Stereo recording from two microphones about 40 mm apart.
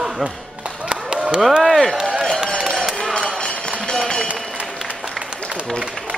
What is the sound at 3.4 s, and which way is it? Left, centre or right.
Run, centre.